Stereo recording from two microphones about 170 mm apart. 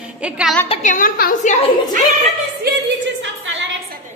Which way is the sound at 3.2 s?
90° right.